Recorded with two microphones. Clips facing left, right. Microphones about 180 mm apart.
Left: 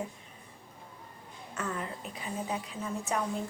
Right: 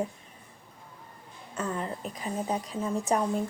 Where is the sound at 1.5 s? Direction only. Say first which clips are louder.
Right 4 dB; 30° right (ahead or behind).